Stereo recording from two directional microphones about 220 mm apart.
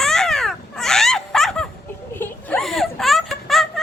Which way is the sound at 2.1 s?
10° left (ahead or behind).